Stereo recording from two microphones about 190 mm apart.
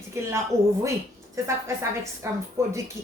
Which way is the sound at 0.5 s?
15° right (ahead or behind).